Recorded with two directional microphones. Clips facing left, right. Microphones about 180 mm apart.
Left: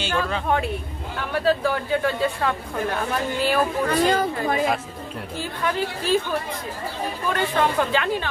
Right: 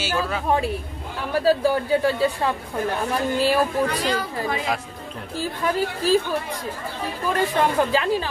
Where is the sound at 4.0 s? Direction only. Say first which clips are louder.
Left 4 dB; 50° left (ahead or behind).